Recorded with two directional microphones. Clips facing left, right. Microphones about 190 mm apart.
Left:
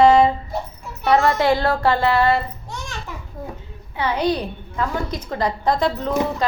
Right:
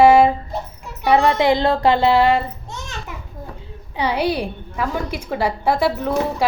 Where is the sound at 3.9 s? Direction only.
15° right (ahead or behind).